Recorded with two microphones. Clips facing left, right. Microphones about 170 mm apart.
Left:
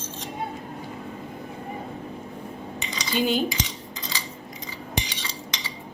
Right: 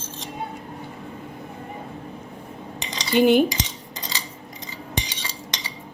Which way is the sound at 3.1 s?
55° right (ahead or behind).